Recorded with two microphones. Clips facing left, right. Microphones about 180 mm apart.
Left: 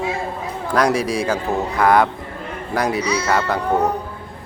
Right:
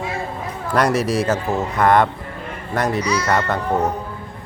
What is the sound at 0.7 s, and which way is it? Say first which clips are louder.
Speech: even; 5° right (ahead or behind).